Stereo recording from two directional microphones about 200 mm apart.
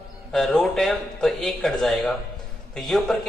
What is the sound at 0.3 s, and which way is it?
Speech, centre (ahead or behind).